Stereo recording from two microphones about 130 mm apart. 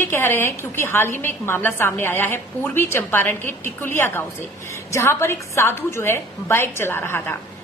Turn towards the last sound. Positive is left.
turn(degrees=20)  # may be behind; listen again after turning